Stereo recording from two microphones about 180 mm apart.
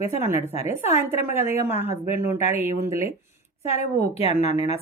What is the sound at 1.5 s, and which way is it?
Speech, 15° right (ahead or behind).